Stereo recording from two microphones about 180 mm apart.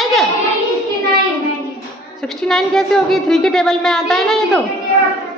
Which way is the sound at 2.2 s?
Centre (ahead or behind).